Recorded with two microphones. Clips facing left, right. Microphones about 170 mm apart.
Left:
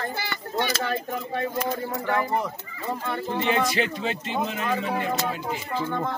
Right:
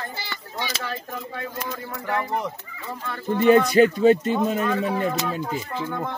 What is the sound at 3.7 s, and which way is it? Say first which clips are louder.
Speech: right 11 dB; 45° right (ahead or behind).